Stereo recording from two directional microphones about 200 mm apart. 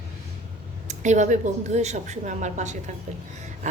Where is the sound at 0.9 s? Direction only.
35° right (ahead or behind).